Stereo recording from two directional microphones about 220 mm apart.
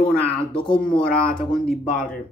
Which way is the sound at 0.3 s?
25° left (ahead or behind).